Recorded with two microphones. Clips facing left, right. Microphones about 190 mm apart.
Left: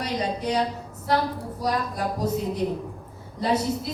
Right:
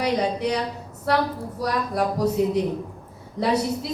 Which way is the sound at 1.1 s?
70° right (ahead or behind).